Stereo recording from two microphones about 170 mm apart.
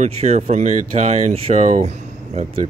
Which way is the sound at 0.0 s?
40° right (ahead or behind).